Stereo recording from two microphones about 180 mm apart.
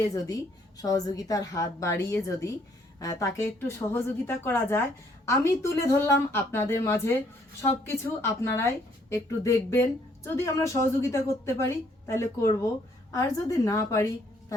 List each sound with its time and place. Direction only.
0.1 s a woman's voice: 20° left (ahead or behind)